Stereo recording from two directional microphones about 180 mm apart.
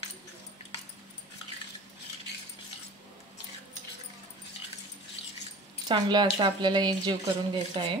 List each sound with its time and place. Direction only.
5.9 s speech: 25° right (ahead or behind)